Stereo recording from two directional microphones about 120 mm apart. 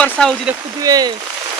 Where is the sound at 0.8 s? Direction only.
35° right (ahead or behind).